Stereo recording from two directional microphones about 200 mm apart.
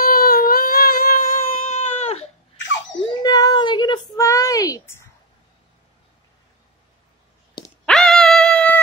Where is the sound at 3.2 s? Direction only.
20° left (ahead or behind).